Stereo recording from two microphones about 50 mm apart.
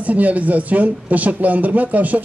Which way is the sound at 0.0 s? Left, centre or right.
Right.